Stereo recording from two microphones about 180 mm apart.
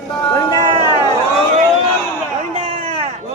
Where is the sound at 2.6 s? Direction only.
30° right (ahead or behind).